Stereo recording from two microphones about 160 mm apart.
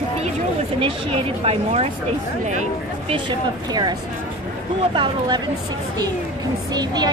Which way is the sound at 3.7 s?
25° right (ahead or behind).